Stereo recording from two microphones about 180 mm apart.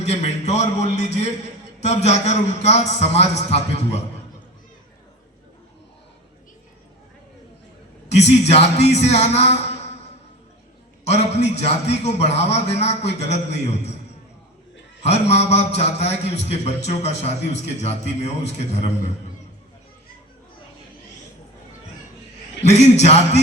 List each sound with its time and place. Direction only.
0.0 s a man's voice: 35° left (ahead or behind)
8.1 s a man's voice: 35° left (ahead or behind)
11.0 s a man's voice: 35° left (ahead or behind)
15.0 s a man's voice: 35° left (ahead or behind)
22.6 s a man's voice: 40° left (ahead or behind)